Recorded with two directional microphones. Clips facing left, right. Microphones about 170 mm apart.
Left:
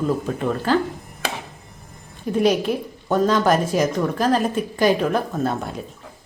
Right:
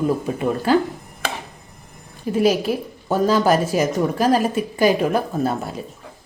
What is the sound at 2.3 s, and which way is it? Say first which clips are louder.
A woman's voice: right 1 dB; 5° right (ahead or behind).